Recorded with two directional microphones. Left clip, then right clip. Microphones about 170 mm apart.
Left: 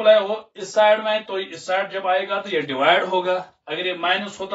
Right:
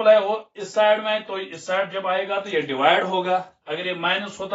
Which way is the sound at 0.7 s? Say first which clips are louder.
Left 2 dB; 10° right (ahead or behind).